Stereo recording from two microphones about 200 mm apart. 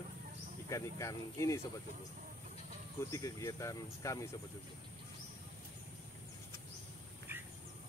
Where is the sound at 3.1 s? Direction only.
15° left (ahead or behind).